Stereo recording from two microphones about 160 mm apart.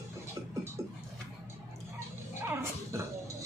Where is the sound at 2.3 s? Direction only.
15° right (ahead or behind).